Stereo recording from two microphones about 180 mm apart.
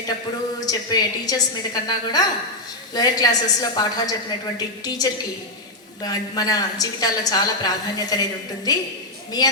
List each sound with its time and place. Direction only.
0.6 s a woman's voice: 20° left (ahead or behind)